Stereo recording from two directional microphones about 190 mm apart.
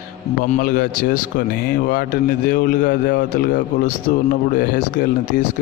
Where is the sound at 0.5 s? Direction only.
50° left (ahead or behind).